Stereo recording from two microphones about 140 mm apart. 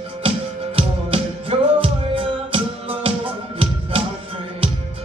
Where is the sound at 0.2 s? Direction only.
40° right (ahead or behind).